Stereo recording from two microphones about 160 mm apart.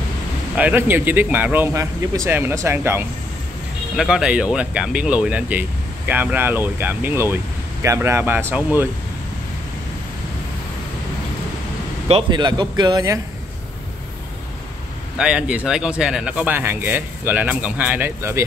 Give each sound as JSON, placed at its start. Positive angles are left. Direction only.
{"t": 0.6, "sound": "speech", "side_deg": -10}
{"t": 3.9, "sound": "speech", "side_deg": -5}
{"t": 12.1, "sound": "speech", "side_deg": -30}
{"t": 15.1, "sound": "speech", "side_deg": -5}